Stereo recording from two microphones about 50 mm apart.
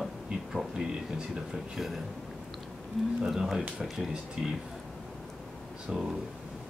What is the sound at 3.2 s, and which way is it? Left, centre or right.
Speech, centre.